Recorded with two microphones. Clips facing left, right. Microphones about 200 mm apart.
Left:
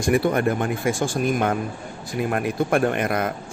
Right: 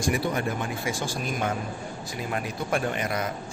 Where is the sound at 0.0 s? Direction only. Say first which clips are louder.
Left 7 dB; 55° left (ahead or behind).